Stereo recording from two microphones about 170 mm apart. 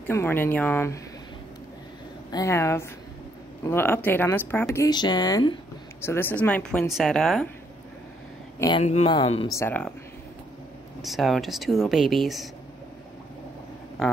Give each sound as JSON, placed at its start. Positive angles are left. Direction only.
{"t": 0.0, "sound": "speech", "side_deg": 15}
{"t": 2.3, "sound": "speech", "side_deg": 15}
{"t": 4.7, "sound": "speech", "side_deg": 25}
{"t": 5.9, "sound": "speech", "side_deg": 15}
{"t": 8.5, "sound": "speech", "side_deg": 25}
{"t": 8.8, "sound": "speech", "side_deg": 40}
{"t": 9.6, "sound": "speech", "side_deg": 10}
{"t": 11.0, "sound": "speech", "side_deg": 0}